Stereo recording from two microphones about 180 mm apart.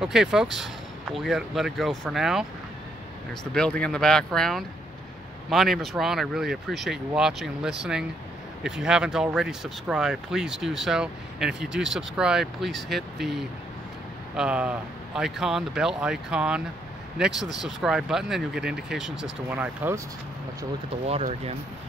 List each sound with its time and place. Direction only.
0.0 s speech: 5° right (ahead or behind)
3.5 s speech: 5° left (ahead or behind); by 20.0 s 10° right (ahead or behind)
21.1 s speech: 35° right (ahead or behind)